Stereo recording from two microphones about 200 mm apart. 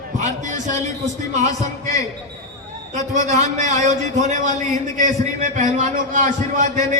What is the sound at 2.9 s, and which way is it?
A man's voice, 35° right (ahead or behind).